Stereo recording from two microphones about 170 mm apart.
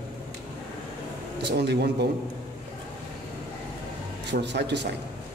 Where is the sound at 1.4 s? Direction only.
80° right.